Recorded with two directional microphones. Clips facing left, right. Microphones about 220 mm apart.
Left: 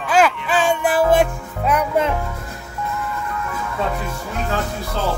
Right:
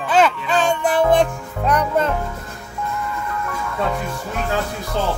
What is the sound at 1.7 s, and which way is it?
Speech, 10° left (ahead or behind).